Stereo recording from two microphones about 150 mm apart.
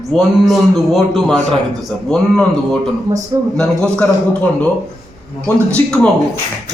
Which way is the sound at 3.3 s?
25° right (ahead or behind).